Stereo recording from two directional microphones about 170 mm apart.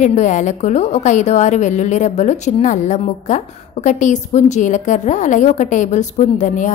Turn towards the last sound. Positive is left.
turn(degrees=45)  # may be behind; listen again after turning